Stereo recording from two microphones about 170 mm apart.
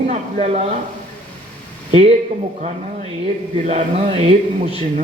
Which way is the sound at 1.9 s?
35° right (ahead or behind).